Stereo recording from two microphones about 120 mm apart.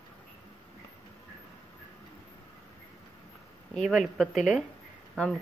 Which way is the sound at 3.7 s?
Centre (ahead or behind).